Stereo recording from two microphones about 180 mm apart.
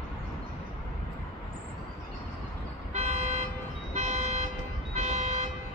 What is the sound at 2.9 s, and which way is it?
Vehicle, 40° right (ahead or behind).